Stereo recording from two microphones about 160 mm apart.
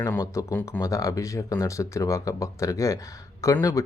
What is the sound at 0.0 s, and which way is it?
Speech, 20° left (ahead or behind).